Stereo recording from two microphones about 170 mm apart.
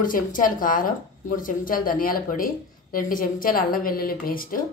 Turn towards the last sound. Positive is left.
turn(degrees=55)  # may be behind; listen again after turning